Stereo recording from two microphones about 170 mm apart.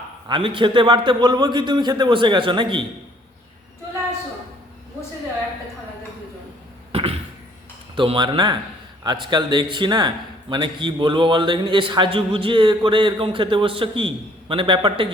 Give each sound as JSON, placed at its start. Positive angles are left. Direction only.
{"t": 0.3, "sound": "a man's voice", "side_deg": -30}
{"t": 6.9, "sound": "a sound", "side_deg": -35}
{"t": 7.9, "sound": "a man's voice", "side_deg": -30}